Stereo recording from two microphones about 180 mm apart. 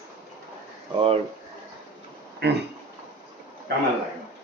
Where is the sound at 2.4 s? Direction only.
65° right (ahead or behind).